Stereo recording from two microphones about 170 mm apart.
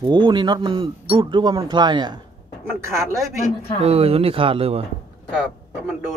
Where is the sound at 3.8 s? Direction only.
35° right (ahead or behind).